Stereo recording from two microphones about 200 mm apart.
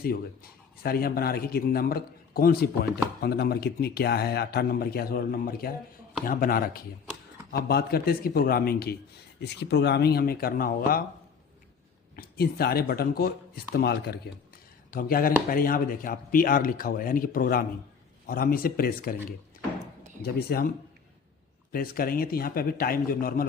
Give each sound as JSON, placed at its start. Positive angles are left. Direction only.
{"t": 0.8, "sound": "a man's voice", "side_deg": 50}
{"t": 12.1, "sound": "a man's voice", "side_deg": 50}
{"t": 20.2, "sound": "a man's voice", "side_deg": 50}
{"t": 21.7, "sound": "a man's voice", "side_deg": 45}